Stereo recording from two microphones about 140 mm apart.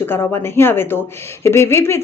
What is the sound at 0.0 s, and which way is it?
A woman's voice, 15° left (ahead or behind).